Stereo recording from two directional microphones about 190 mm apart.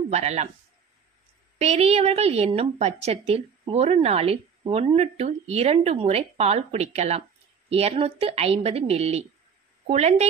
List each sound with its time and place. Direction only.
0.1 s a woman's voice: 35° right (ahead or behind)
1.6 s a woman's voice: 35° right (ahead or behind)